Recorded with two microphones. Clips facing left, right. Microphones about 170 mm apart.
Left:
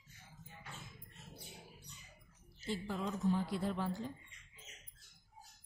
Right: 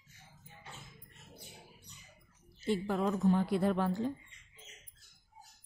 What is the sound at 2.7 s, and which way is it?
A woman's voice, 60° right (ahead or behind).